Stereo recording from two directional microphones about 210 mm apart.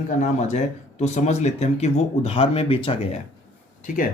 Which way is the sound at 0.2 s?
35° left (ahead or behind).